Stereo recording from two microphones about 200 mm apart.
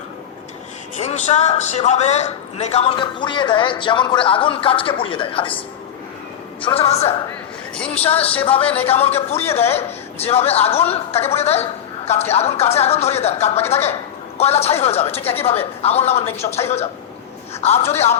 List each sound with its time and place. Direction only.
0.9 s a man's voice: 35° left (ahead or behind)
7.8 s speech: 5° left (ahead or behind)
8.0 s a man's voice: 30° left (ahead or behind)